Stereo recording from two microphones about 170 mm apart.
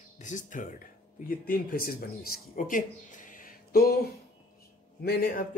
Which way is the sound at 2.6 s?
50° left (ahead or behind).